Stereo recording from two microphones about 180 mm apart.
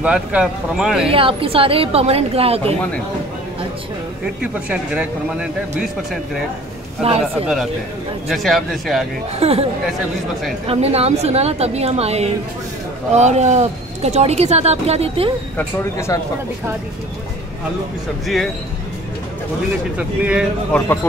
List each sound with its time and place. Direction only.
0.0 s speech: 5° right (ahead or behind)
1.0 s speech: 30° right (ahead or behind)
4.4 s speech: 5° right (ahead or behind)
7.0 s speech: 35° right (ahead or behind)
8.3 s speech: centre (ahead or behind)
9.4 s speech: 35° right (ahead or behind)
10.7 s speech: 35° right (ahead or behind)
15.5 s speech: 15° left (ahead or behind)
18.2 s speech: centre (ahead or behind)
20.0 s speech: 5° right (ahead or behind)